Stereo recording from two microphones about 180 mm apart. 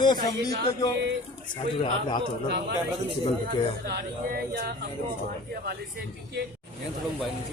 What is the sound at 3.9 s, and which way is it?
Speech, 60° right (ahead or behind).